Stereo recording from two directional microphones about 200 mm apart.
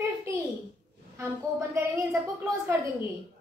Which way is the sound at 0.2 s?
15° right (ahead or behind).